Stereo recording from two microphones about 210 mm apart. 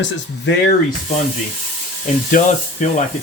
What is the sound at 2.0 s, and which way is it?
Speech, 35° left (ahead or behind).